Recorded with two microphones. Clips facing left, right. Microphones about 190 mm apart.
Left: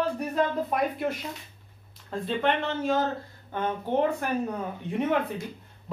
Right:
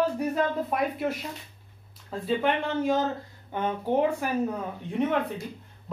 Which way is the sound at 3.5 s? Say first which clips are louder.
Right 1 dB; 10° right (ahead or behind).